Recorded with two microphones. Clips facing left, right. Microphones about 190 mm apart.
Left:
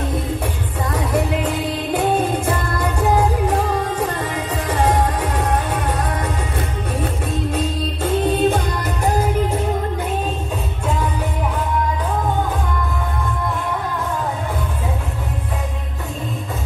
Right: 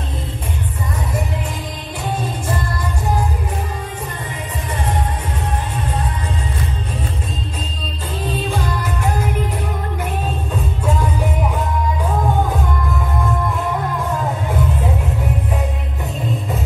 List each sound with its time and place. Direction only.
0.8 s music: 75° left (ahead or behind)
2.0 s music: 60° left (ahead or behind); by 6.0 s 75° left (ahead or behind)
8.5 s music: 40° left (ahead or behind)